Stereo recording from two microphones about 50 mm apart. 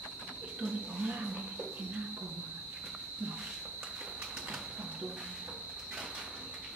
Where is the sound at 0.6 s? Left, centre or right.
Centre.